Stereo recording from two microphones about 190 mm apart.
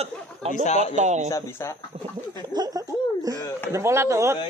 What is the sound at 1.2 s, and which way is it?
Speech, 15° left (ahead or behind).